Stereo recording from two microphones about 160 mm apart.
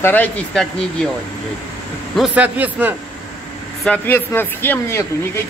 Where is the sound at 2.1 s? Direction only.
5° right (ahead or behind).